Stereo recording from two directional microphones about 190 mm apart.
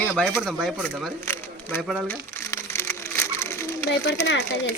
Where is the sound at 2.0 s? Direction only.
10° left (ahead or behind).